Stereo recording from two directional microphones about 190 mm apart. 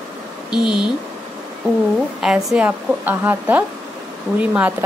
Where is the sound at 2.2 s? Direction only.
Centre (ahead or behind).